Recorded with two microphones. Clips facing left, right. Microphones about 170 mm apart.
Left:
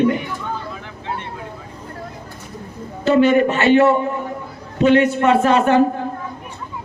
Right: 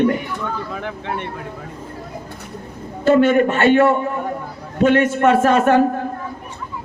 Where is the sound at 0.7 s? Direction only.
60° right (ahead or behind).